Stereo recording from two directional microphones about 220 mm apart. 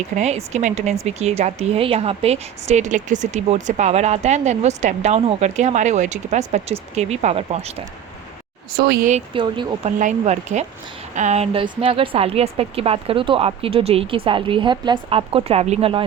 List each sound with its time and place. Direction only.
0.2 s speech: 30° right (ahead or behind)
8.7 s speech: 45° right (ahead or behind); by 9.9 s 20° right (ahead or behind)
10.0 s a woman's voice: 35° right (ahead or behind)